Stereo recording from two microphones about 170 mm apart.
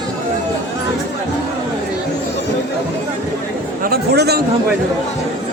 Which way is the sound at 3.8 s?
65° right (ahead or behind).